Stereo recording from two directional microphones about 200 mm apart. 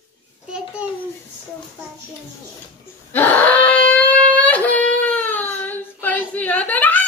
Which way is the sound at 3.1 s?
10° left (ahead or behind).